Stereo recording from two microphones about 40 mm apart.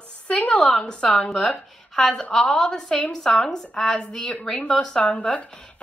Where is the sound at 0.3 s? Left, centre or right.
Left.